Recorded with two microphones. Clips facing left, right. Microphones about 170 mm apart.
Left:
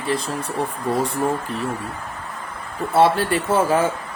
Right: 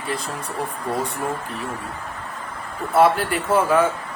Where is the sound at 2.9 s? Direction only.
30° left (ahead or behind).